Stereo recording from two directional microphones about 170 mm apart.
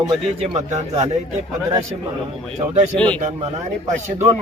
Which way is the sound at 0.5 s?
40° right (ahead or behind).